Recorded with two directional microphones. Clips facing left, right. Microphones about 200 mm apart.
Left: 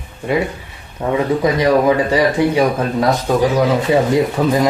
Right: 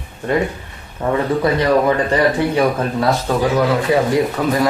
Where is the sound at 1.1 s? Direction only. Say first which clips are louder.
Left 1 dB; 10° left (ahead or behind).